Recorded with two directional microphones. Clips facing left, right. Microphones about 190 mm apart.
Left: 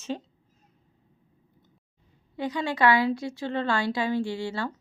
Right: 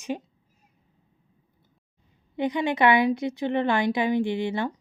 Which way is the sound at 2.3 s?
20° right (ahead or behind).